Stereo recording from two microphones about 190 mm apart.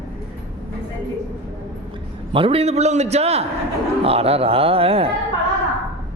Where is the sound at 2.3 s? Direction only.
30° right (ahead or behind).